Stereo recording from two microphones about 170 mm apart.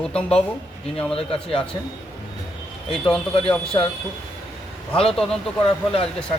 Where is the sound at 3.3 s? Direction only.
30° left (ahead or behind).